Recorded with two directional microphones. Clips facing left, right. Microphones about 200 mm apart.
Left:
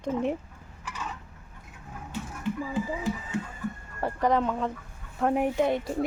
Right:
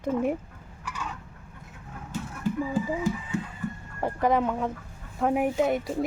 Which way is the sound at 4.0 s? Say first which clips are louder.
Right 1 dB; 10° right (ahead or behind).